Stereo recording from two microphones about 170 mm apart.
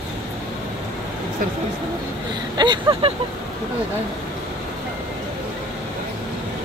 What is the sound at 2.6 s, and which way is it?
Speech, 30° right (ahead or behind).